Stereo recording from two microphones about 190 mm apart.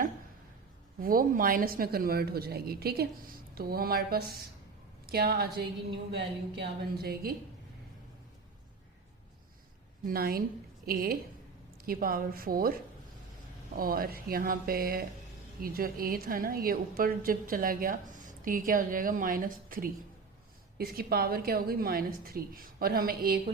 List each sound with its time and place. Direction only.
1.0 s a woman's voice: 45° right (ahead or behind)
10.1 s a woman's voice: 50° right (ahead or behind)